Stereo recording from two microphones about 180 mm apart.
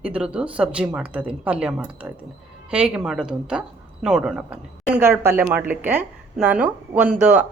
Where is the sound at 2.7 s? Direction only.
5° right (ahead or behind).